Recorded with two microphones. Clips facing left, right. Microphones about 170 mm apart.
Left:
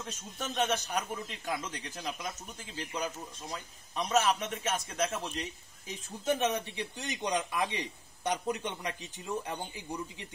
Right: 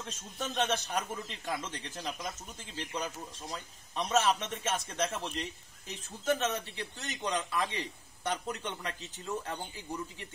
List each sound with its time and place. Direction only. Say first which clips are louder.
0.0 s speech: even; 10° left (ahead or behind)
6.2 s a man's voice: left 1 dB; 15° left (ahead or behind)